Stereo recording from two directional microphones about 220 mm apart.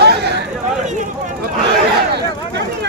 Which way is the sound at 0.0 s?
50° right (ahead or behind).